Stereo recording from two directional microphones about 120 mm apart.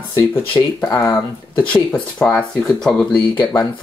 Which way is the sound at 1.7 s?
5° left (ahead or behind).